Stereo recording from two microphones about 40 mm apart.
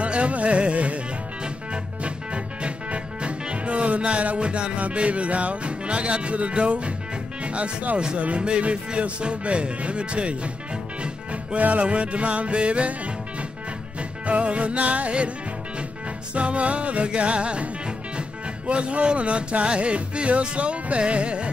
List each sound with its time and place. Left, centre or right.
0.0 s music: right
7.4 s speech: right
8.2 s music: right
11.5 s music: right
14.2 s music: right
16.3 s music: right
18.7 s music: right